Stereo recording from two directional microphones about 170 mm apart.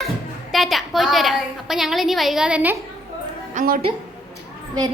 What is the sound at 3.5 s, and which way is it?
Speech, 50° right (ahead or behind).